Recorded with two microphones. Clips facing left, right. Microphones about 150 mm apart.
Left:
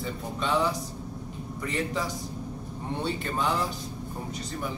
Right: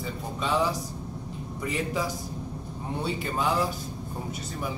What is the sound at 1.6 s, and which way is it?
Speech, 5° right (ahead or behind).